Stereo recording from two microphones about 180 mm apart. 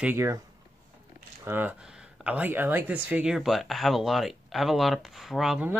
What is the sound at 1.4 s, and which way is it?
Speech, 10° right (ahead or behind).